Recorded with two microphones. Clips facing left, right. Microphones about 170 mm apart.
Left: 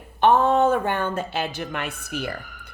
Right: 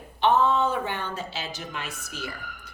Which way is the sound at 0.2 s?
50° left (ahead or behind).